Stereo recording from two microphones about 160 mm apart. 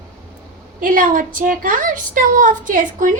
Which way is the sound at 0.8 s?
60° right (ahead or behind).